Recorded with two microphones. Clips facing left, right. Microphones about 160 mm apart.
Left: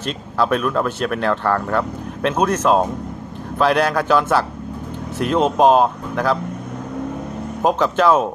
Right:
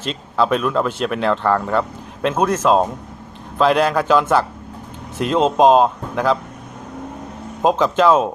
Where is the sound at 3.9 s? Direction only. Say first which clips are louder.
Right 1 dB; 10° right (ahead or behind).